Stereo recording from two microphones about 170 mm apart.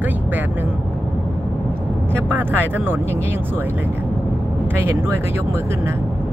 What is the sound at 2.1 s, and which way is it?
Speech, 10° right (ahead or behind).